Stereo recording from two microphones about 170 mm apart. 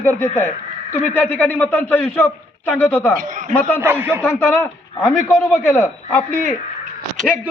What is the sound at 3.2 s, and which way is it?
Speech, 50° right (ahead or behind).